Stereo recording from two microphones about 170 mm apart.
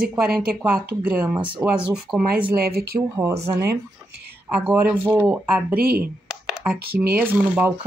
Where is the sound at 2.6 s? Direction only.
65° right (ahead or behind).